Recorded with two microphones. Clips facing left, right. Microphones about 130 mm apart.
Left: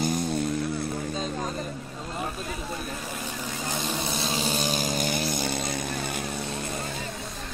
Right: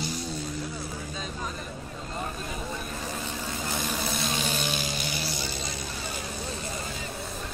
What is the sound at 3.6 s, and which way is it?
Vehicle, 20° left (ahead or behind).